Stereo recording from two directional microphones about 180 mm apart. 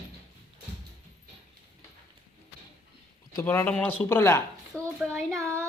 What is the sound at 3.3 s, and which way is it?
Speech, 15° left (ahead or behind).